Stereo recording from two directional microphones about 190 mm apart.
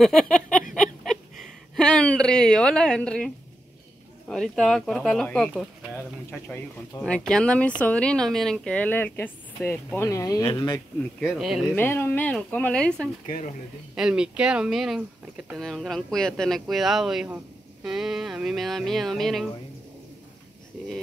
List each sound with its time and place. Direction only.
0.0 s speech: 5° left (ahead or behind)
1.8 s speech: 5° left (ahead or behind)
4.3 s a woman's voice: centre (ahead or behind); by 10.8 s 20° left (ahead or behind)
11.1 s speech: centre (ahead or behind)
11.7 s a woman's voice: 10° left (ahead or behind)
13.9 s speech: 5° right (ahead or behind)